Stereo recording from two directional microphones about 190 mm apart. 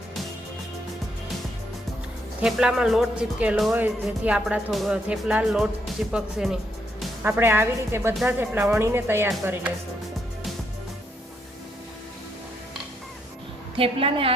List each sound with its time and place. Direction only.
2.4 s speech: 5° right (ahead or behind)
13.7 s a woman's voice: 30° right (ahead or behind)